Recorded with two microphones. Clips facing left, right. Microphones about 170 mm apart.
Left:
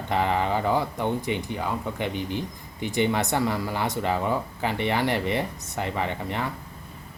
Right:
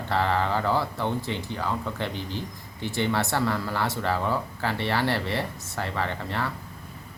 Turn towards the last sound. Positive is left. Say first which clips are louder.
# left 1 dB
turn(degrees=15)  # may be behind; listen again after turning